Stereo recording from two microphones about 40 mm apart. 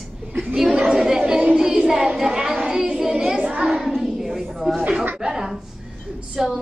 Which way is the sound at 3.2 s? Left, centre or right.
Right.